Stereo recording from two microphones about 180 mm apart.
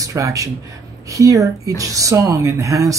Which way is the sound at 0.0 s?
20° right (ahead or behind).